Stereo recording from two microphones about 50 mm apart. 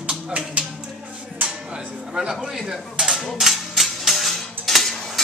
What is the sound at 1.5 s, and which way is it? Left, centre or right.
Music, centre.